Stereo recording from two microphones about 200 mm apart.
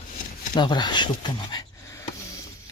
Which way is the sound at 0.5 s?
20° left (ahead or behind).